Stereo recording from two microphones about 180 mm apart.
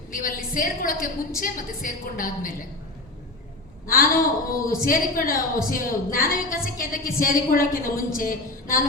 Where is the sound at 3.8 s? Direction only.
55° left (ahead or behind).